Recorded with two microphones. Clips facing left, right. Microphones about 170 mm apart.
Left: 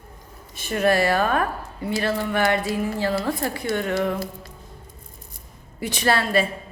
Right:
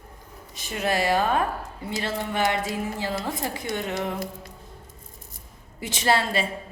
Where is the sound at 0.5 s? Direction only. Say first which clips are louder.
Left 7 dB; 60° left (ahead or behind).